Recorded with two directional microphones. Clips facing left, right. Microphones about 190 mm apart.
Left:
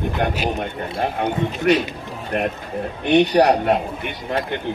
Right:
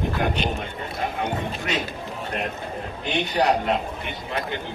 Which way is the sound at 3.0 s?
60° left (ahead or behind).